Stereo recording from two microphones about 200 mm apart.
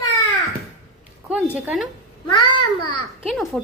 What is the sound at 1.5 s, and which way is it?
Speech, 5° right (ahead or behind).